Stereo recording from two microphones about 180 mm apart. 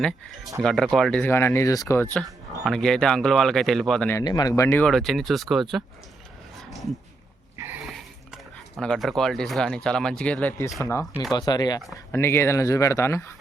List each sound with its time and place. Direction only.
0.0 s speech: centre (ahead or behind)
2.2 s speech: centre (ahead or behind)
4.2 s speech: 20° left (ahead or behind); by 5.8 s centre (ahead or behind)
6.6 s a sound: centre (ahead or behind)
8.7 s speech: centre (ahead or behind)
11.3 s speech: 20° left (ahead or behind)